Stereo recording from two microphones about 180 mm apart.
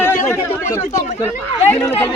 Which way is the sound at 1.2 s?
10° left (ahead or behind).